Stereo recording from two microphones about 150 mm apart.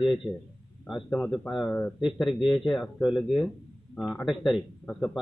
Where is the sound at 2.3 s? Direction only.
35° left (ahead or behind).